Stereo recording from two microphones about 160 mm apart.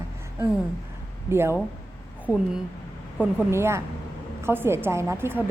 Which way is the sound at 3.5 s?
15° right (ahead or behind).